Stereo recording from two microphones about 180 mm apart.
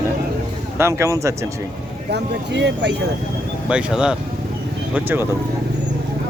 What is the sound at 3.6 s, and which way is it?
Speech, 5° right (ahead or behind).